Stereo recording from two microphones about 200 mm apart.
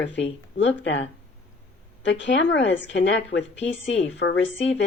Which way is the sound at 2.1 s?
65° left (ahead or behind).